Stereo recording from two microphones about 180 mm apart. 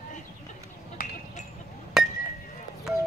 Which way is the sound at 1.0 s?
50° left (ahead or behind).